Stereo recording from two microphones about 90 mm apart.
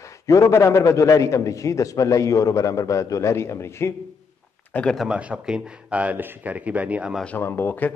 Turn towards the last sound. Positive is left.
turn(degrees=20)  # may be behind; listen again after turning